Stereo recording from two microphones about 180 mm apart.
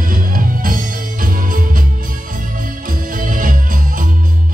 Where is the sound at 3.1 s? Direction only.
50° right (ahead or behind).